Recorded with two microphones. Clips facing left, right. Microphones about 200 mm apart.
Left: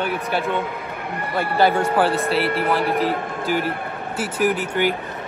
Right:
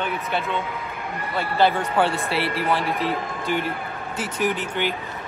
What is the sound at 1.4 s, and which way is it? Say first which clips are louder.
Speech: left 2 dB; 50° left (ahead or behind).